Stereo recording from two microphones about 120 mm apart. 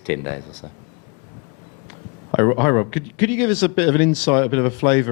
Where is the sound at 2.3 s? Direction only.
25° left (ahead or behind).